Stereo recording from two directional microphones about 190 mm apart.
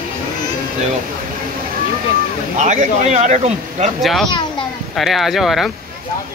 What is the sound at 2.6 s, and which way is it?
Speech, 40° right (ahead or behind).